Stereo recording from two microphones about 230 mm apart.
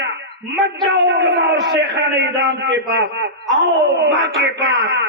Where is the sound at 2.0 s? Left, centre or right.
Right.